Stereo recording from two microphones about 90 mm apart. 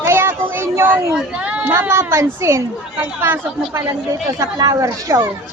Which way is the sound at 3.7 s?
40° right (ahead or behind).